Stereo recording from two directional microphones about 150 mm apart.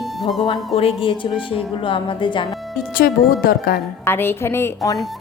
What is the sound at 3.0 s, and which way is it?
Speech, 75° left (ahead or behind).